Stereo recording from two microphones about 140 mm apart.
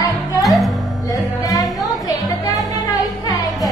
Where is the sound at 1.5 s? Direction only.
25° left (ahead or behind).